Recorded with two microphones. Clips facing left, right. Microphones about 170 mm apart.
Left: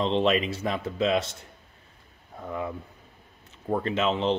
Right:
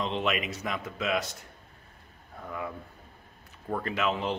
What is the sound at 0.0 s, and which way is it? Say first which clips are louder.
A man's voice: left 6 dB; 30° left (ahead or behind).